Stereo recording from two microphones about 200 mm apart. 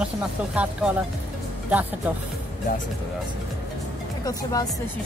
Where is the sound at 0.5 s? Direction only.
5° right (ahead or behind).